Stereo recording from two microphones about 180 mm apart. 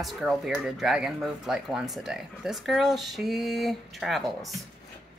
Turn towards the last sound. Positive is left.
turn(degrees=0)  # may be behind; listen again after turning